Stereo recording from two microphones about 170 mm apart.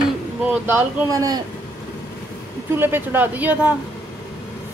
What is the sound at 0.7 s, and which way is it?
Speech, 15° right (ahead or behind).